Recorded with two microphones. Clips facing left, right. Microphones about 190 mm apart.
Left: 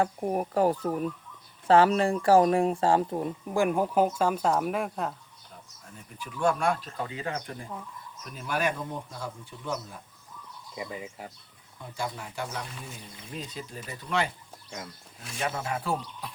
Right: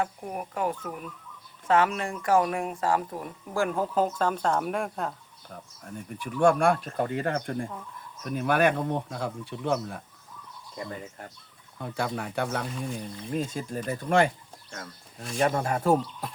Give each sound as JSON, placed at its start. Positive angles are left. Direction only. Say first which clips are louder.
{"t": 0.0, "sound": "speech", "louder": "left 5 dB", "side_deg": 35}
{"t": 5.8, "sound": "speech", "louder": "right 7 dB", "side_deg": -55}
{"t": 10.8, "sound": "speech", "louder": "even", "side_deg": 5}
{"t": 11.8, "sound": "speech", "louder": "right 5 dB", "side_deg": -65}
{"t": 13.3, "sound": "speech", "louder": "right 8 dB", "side_deg": -45}
{"t": 14.7, "sound": "speech", "louder": "left 1 dB", "side_deg": 10}
{"t": 15.4, "sound": "speech", "louder": "right 6 dB", "side_deg": -45}
{"t": 16.2, "sound": "a sound", "louder": "right 4 dB", "side_deg": -45}